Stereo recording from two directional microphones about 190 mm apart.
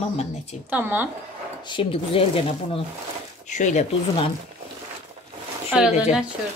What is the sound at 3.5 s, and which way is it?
Speech, 40° left (ahead or behind).